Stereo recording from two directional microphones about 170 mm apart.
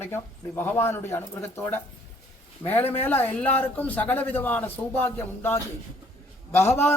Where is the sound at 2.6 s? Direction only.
10° left (ahead or behind).